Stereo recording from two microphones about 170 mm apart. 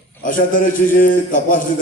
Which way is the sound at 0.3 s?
50° left (ahead or behind).